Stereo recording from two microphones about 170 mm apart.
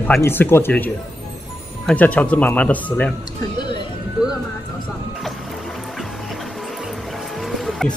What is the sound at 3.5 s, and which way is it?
Music, 25° left (ahead or behind).